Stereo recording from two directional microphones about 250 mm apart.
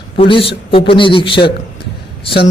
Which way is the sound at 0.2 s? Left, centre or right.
Left.